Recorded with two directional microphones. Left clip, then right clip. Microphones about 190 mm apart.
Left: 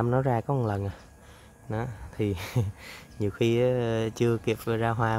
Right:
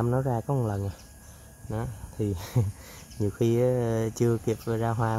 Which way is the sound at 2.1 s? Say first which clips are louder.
Left 1 dB; 10° right (ahead or behind).